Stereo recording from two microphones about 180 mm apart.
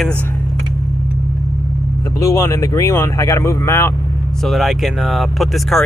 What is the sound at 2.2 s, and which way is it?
Speech, 15° left (ahead or behind).